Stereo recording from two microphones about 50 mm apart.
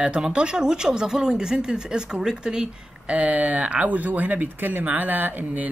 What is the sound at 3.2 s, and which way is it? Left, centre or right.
Speech, right.